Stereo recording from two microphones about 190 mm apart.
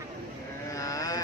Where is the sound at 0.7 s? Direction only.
15° left (ahead or behind).